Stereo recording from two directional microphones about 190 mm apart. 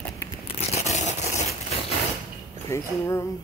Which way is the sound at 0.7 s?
35° left (ahead or behind).